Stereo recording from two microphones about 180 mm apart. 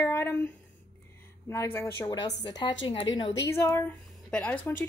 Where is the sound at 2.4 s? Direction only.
25° left (ahead or behind); by 4.7 s 5° left (ahead or behind).